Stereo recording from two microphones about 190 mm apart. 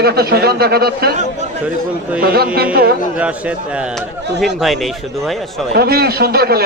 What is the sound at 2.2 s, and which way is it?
Speech, 55° right (ahead or behind).